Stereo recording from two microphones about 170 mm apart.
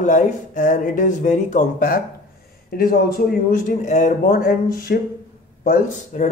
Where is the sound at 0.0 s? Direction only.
50° left (ahead or behind).